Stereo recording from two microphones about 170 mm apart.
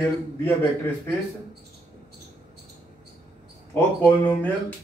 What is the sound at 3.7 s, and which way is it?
Speech, 10° left (ahead or behind).